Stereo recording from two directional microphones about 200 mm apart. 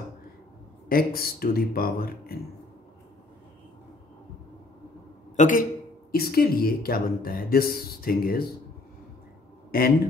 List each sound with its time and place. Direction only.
0.8 s speech: 50° left (ahead or behind)
5.3 s speech: 40° left (ahead or behind)
6.1 s speech: 50° left (ahead or behind)
9.7 s a man's voice: 50° left (ahead or behind)